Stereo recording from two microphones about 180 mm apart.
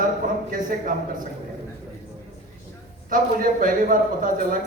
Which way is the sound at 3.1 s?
50° right (ahead or behind).